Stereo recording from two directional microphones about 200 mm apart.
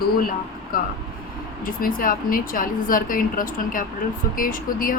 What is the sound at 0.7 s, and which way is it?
Speech, 45° left (ahead or behind).